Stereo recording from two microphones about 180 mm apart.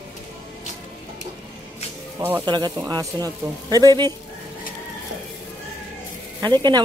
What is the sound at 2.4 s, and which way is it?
Speech, 25° right (ahead or behind).